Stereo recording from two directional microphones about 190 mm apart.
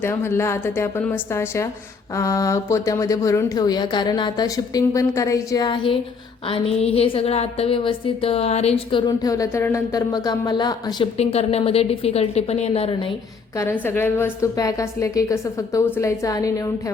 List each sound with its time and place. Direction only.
0.0 s a woman's voice: 10° left (ahead or behind)
11.2 s a woman's voice: 35° left (ahead or behind)
13.8 s speech: 10° left (ahead or behind)